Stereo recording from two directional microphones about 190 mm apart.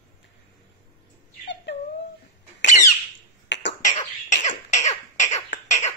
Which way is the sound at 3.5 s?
65° left (ahead or behind).